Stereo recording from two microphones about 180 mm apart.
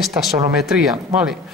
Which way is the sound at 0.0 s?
Centre (ahead or behind).